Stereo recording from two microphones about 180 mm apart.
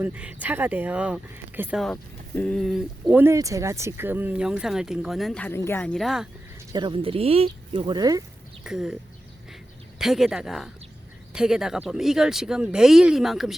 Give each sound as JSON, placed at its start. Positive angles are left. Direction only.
{"t": 0.0, "sound": "speech", "side_deg": -10}
{"t": 1.8, "sound": "speech", "side_deg": 5}
{"t": 6.7, "sound": "speech", "side_deg": -25}
{"t": 8.6, "sound": "speech", "side_deg": -5}
{"t": 10.0, "sound": "speech", "side_deg": 0}